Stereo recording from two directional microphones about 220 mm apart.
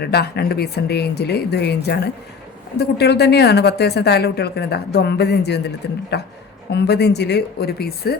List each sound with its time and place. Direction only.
0.0 s a woman's voice: 45° left (ahead or behind)